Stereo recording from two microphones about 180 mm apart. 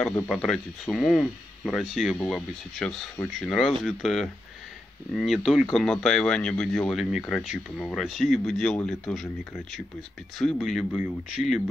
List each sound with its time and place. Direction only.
0.3 s speech: centre (ahead or behind)
10.4 s speech: centre (ahead or behind)